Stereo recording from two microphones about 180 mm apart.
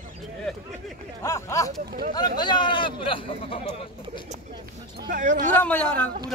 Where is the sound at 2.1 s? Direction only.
25° left (ahead or behind).